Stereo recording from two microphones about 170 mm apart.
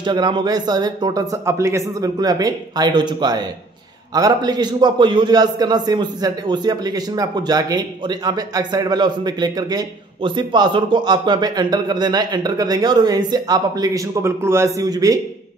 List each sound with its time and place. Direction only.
0.0 s a man's voice: 25° right (ahead or behind)